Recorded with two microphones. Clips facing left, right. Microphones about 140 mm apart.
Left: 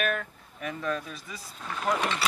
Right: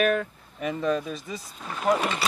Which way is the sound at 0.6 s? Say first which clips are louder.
Right 6 dB; 20° right (ahead or behind).